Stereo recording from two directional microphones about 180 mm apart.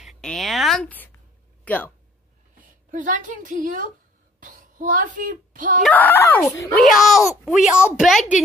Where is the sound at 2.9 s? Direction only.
45° right (ahead or behind).